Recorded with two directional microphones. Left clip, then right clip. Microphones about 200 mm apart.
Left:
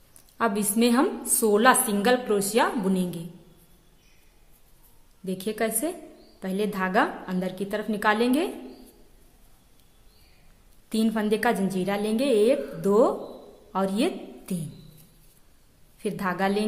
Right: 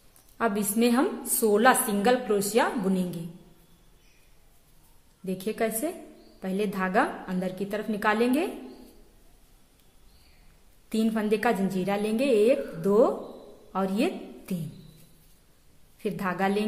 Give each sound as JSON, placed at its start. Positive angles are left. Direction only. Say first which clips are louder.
{"t": 0.4, "sound": "a woman's voice", "louder": "left 2 dB", "side_deg": 10}
{"t": 5.2, "sound": "a woman's voice", "louder": "left 1 dB", "side_deg": 5}
{"t": 10.9, "sound": "a woman's voice", "louder": "left 1 dB", "side_deg": 5}
{"t": 16.0, "sound": "a woman's voice", "louder": "left 1 dB", "side_deg": 5}